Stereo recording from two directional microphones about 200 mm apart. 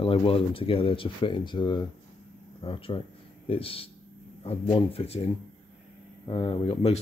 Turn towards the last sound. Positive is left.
turn(degrees=30)  # may be behind; listen again after turning